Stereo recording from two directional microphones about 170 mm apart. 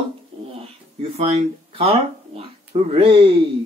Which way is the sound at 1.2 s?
35° right (ahead or behind).